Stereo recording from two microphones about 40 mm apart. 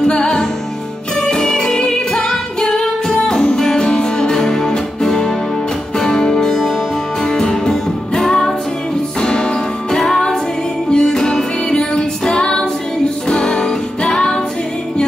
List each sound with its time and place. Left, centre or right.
0.1 s music: left